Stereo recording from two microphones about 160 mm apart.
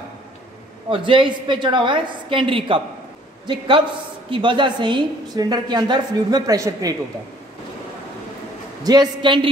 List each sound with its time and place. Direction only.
0.8 s a woman's voice: 35° right (ahead or behind)
8.8 s a woman's voice: 25° right (ahead or behind)